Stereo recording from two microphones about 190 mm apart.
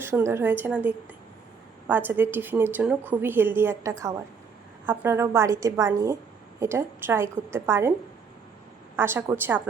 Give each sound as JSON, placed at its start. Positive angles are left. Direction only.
{"t": 0.0, "sound": "a woman's voice", "side_deg": -15}
{"t": 9.0, "sound": "a woman's voice", "side_deg": -10}